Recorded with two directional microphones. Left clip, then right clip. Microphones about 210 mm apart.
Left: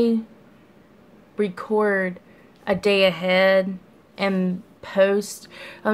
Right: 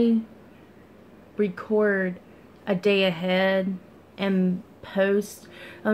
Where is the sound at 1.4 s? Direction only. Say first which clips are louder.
Left 2 dB; 15° left (ahead or behind).